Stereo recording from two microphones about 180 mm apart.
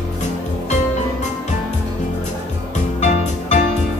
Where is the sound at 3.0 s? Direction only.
40° left (ahead or behind).